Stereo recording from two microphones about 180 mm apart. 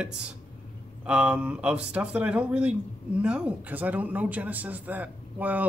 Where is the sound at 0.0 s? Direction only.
5° right (ahead or behind).